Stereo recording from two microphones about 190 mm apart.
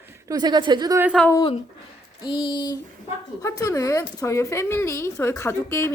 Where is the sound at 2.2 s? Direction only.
25° left (ahead or behind).